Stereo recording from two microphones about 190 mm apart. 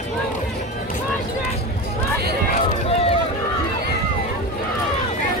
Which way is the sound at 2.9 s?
30° left (ahead or behind).